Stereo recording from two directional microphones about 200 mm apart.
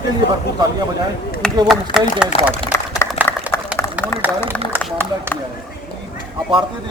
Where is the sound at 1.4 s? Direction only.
5° left (ahead or behind).